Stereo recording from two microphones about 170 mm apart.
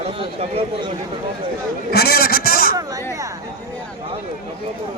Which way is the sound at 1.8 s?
65° left (ahead or behind).